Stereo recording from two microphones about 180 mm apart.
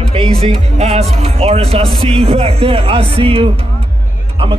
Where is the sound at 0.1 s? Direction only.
30° right (ahead or behind).